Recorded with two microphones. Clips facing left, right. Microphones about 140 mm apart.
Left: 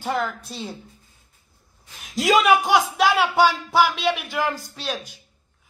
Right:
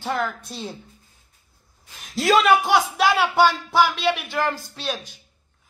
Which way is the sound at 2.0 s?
5° left (ahead or behind).